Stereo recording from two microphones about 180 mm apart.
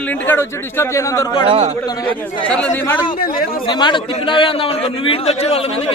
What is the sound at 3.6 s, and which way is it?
A man's voice, 25° left (ahead or behind).